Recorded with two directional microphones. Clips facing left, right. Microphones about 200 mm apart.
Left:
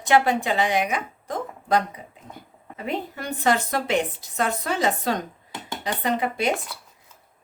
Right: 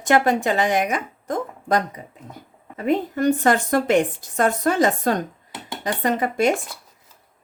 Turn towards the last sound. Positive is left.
turn(degrees=-45)  # may be behind; listen again after turning